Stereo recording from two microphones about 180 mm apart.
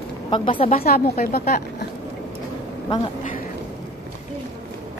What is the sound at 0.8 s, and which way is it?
Speech, 55° left (ahead or behind).